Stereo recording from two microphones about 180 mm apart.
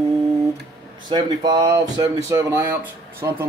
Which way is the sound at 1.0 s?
25° right (ahead or behind).